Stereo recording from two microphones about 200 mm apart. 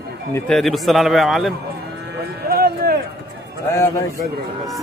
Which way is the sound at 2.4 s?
50° right (ahead or behind).